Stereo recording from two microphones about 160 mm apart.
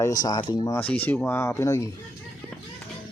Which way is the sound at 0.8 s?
10° left (ahead or behind).